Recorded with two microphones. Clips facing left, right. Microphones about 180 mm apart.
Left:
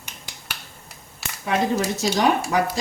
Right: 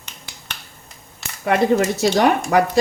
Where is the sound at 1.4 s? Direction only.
60° right (ahead or behind).